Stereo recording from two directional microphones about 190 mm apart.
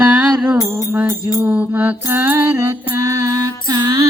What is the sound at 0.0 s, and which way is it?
Music, 10° right (ahead or behind).